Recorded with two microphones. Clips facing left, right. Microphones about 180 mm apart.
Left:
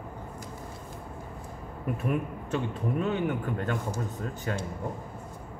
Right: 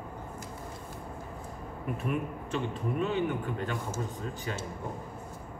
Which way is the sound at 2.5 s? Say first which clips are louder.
Left 2 dB; 50° left (ahead or behind).